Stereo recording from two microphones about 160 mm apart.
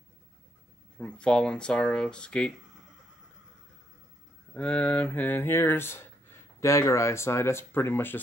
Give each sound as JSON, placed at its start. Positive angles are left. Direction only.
{"t": 0.9, "sound": "speech", "side_deg": 5}
{"t": 4.6, "sound": "speech", "side_deg": 10}